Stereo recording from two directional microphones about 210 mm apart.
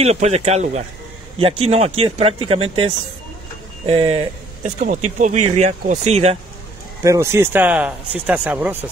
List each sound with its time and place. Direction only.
0.0 s speech: 30° right (ahead or behind)
7.0 s speech: 15° right (ahead or behind)